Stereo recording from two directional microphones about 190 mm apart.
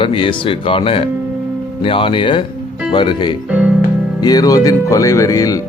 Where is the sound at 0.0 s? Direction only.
30° left (ahead or behind).